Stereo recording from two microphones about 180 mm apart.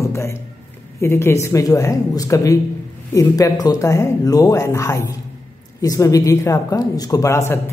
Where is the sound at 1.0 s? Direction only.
15° left (ahead or behind).